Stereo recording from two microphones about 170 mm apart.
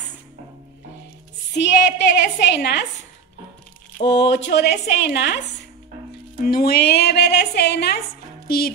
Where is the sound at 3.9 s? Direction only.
90° left.